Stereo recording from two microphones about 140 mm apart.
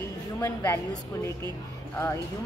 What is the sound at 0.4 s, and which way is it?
Speech, 25° left (ahead or behind).